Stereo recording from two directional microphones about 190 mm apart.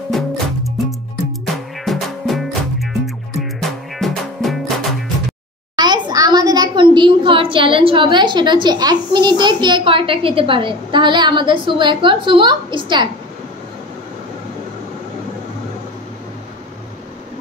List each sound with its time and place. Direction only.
0.1 s music: centre (ahead or behind)
1.4 s music: centre (ahead or behind)
5.8 s a child's voice: 20° right (ahead or behind)